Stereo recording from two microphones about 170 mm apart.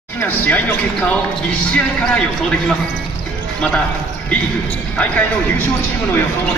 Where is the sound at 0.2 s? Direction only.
10° left (ahead or behind).